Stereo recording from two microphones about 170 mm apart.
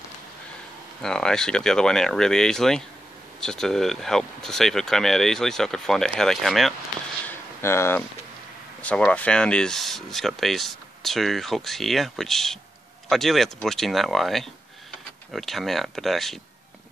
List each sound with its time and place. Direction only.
1.0 s speech: 5° left (ahead or behind)
7.2 s a sound: 15° left (ahead or behind)
8.8 s speech: 5° left (ahead or behind)